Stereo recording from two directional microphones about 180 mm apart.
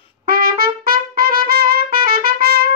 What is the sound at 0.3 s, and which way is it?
Trumpet, 55° right (ahead or behind).